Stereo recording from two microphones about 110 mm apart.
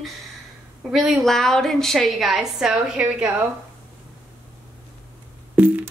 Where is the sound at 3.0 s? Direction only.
15° right (ahead or behind).